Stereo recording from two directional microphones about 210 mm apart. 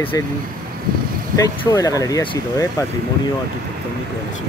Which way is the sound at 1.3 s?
15° left (ahead or behind).